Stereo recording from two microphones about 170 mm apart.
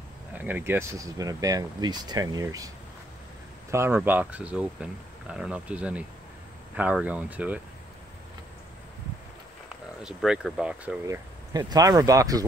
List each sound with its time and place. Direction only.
0.4 s speech: 10° right (ahead or behind)
3.7 s speech: 15° right (ahead or behind)
10.0 s speech: 5° right (ahead or behind)
11.1 s speech: 20° right (ahead or behind)